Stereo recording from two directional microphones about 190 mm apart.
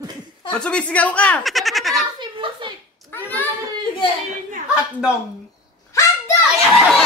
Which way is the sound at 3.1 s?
10° left (ahead or behind).